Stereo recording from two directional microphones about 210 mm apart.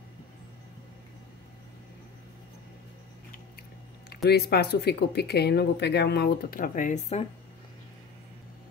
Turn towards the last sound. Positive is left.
turn(degrees=35)  # may be behind; listen again after turning